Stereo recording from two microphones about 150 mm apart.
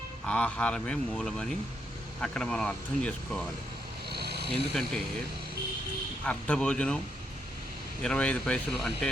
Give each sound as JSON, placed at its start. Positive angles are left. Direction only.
{"t": 0.3, "sound": "speech", "side_deg": 10}
{"t": 4.1, "sound": "a sound", "side_deg": -90}
{"t": 4.7, "sound": "speech", "side_deg": 0}
{"t": 6.2, "sound": "speech", "side_deg": 10}
{"t": 8.0, "sound": "speech", "side_deg": 5}